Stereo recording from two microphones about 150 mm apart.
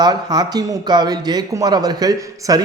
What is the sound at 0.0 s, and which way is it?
A man's voice, 25° right (ahead or behind).